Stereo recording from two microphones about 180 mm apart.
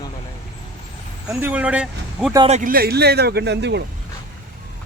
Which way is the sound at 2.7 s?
60° right (ahead or behind).